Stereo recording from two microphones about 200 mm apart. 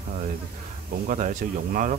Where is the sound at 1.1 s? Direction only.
40° right (ahead or behind).